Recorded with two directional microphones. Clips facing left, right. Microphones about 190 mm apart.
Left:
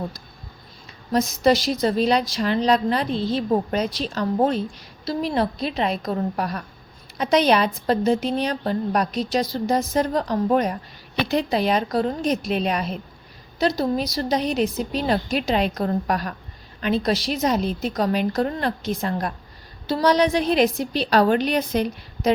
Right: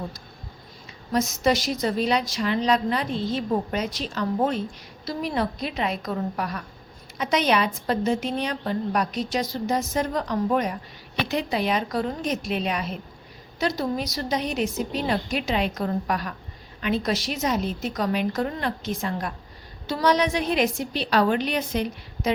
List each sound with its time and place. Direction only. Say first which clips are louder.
1.1 s a woman's voice: left 4 dB; 35° left (ahead or behind)